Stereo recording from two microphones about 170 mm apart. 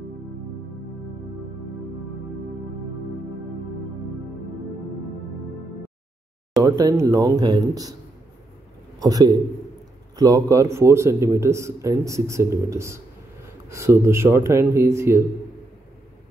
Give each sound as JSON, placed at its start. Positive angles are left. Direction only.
{"t": 6.6, "sound": "speech", "side_deg": -20}
{"t": 9.0, "sound": "speech", "side_deg": -20}